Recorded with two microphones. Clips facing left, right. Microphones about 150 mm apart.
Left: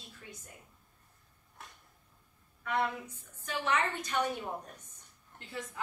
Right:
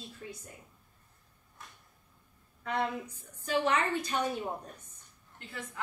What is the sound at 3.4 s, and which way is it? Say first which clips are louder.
Speech: right 3 dB; 35° right (ahead or behind).